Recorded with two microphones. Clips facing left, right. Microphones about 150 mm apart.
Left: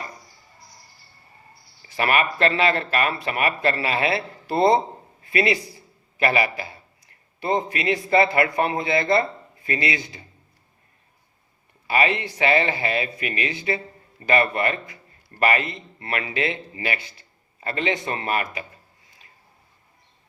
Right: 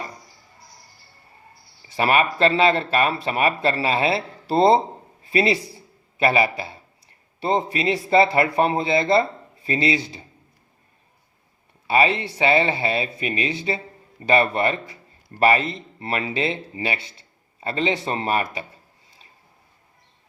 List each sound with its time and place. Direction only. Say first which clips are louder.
2.0 s a man's voice: right 2 dB; 30° right (ahead or behind)
11.9 s a man's voice: right 3 dB; 30° right (ahead or behind)